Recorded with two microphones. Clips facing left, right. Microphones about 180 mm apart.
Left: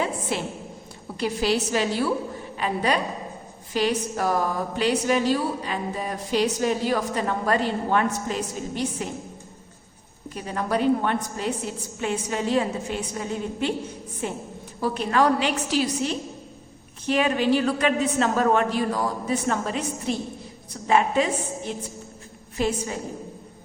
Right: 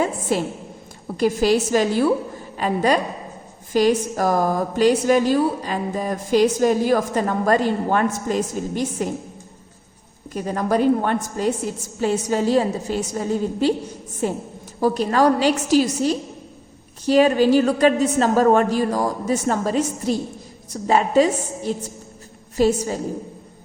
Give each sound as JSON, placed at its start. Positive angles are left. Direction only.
{"t": 0.0, "sound": "a sound", "side_deg": -45}
{"t": 1.1, "sound": "a woman's voice", "side_deg": -45}
{"t": 10.3, "sound": "a woman's voice", "side_deg": -45}